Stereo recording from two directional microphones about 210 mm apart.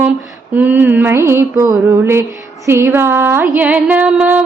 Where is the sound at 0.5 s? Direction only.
10° right (ahead or behind).